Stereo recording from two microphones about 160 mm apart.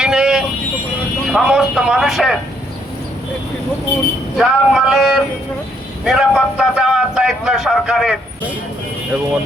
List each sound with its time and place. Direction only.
0.0 s vehicle: 5° right (ahead or behind)
1.3 s speech: 5° right (ahead or behind)
4.4 s speech: centre (ahead or behind)